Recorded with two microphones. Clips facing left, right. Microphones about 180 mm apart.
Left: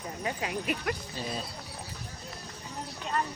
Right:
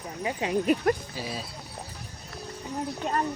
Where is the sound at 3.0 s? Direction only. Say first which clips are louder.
Right 3 dB; 50° right (ahead or behind).